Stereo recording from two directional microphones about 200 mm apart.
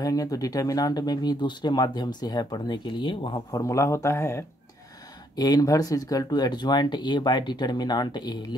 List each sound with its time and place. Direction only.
0.0 s speech: 20° left (ahead or behind)